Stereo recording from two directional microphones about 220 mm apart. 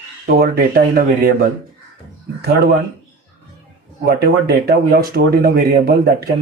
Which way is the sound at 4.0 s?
45° right (ahead or behind).